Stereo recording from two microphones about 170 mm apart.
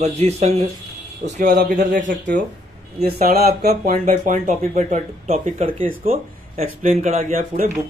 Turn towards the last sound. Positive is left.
turn(degrees=-55)  # may be behind; listen again after turning